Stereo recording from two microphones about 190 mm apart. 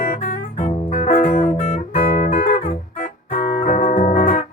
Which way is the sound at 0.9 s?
30° left (ahead or behind).